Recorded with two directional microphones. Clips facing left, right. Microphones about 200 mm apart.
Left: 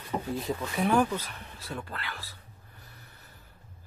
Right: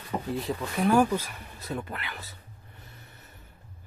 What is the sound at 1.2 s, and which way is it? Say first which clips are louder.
Speech: right 3 dB; 15° right (ahead or behind).